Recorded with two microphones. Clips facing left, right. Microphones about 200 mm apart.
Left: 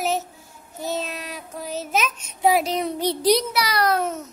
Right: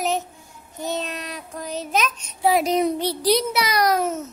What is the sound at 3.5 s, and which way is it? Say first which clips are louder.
Speech: right 1 dB; 15° right (ahead or behind).